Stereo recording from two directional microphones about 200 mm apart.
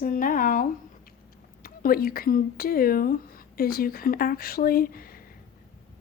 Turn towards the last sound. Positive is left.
turn(degrees=45)  # may be behind; listen again after turning